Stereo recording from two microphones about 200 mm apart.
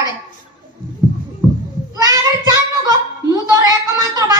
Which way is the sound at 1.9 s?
15° right (ahead or behind).